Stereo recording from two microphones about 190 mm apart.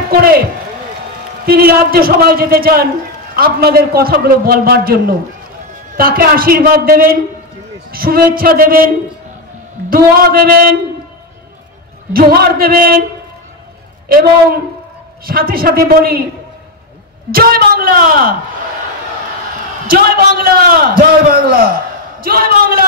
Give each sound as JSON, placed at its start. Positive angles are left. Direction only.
{"t": 0.1, "sound": "a man's voice", "side_deg": -50}
{"t": 1.4, "sound": "a man's voice", "side_deg": -50}
{"t": 12.1, "sound": "a man's voice", "side_deg": -50}
{"t": 14.0, "sound": "a man's voice", "side_deg": -50}
{"t": 17.3, "sound": "a woman's voice", "side_deg": -50}
{"t": 19.9, "sound": "a man's voice", "side_deg": -50}